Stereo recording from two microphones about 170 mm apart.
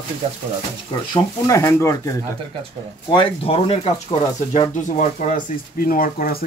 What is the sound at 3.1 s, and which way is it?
Speech, 30° left (ahead or behind).